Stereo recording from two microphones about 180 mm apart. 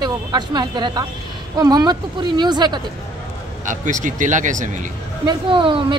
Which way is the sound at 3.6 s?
45° right (ahead or behind).